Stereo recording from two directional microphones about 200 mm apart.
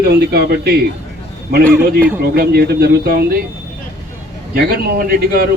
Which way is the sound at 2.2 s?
50° right (ahead or behind).